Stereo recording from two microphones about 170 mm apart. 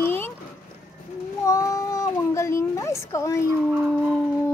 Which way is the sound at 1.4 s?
20° left (ahead or behind).